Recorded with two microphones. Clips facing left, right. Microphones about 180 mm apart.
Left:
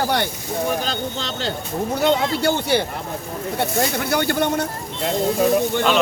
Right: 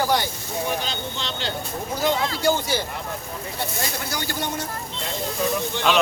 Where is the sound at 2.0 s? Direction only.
65° left (ahead or behind).